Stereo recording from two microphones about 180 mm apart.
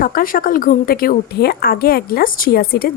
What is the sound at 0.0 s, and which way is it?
A woman's voice, 50° left (ahead or behind).